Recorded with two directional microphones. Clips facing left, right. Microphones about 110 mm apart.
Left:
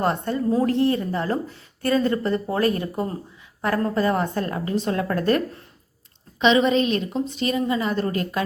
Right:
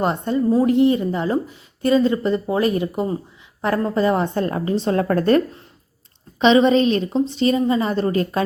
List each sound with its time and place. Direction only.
0.0 s a woman's voice: 15° right (ahead or behind); by 5.4 s 35° right (ahead or behind)
6.4 s a woman's voice: 35° right (ahead or behind)